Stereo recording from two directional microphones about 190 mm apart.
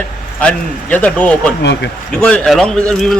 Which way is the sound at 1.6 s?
65° left (ahead or behind).